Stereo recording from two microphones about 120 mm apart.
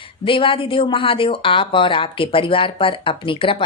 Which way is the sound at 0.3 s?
45° left (ahead or behind).